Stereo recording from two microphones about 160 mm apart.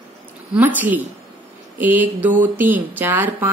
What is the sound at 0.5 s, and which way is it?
A woman's voice, 10° right (ahead or behind).